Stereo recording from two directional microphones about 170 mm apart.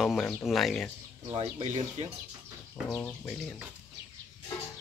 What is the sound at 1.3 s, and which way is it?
Speech, 35° right (ahead or behind).